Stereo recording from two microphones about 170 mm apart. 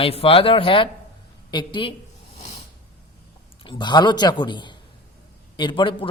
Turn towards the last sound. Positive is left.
turn(degrees=30)  # may be behind; listen again after turning